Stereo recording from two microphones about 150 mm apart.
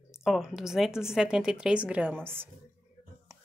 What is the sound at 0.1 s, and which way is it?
A woman's voice, centre (ahead or behind).